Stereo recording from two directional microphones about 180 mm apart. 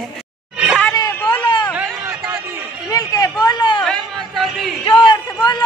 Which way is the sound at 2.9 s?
20° left (ahead or behind).